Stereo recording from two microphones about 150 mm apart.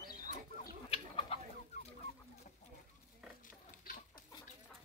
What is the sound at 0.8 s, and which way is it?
Chicken, 40° left (ahead or behind).